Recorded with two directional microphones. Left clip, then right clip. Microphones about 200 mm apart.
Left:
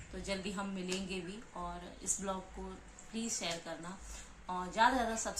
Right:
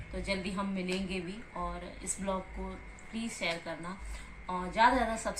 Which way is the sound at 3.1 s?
15° left (ahead or behind).